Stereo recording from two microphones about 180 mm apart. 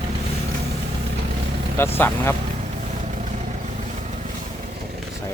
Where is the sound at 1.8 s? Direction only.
10° left (ahead or behind).